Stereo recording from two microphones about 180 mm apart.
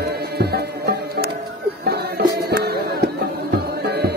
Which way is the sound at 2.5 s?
65° right (ahead or behind).